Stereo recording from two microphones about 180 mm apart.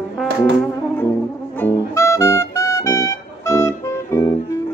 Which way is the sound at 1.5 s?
15° left (ahead or behind).